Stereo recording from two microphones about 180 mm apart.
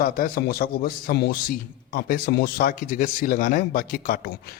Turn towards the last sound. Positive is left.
turn(degrees=55)  # may be behind; listen again after turning